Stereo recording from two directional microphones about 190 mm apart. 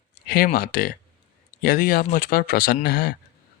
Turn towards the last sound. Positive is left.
turn(degrees=55)  # may be behind; listen again after turning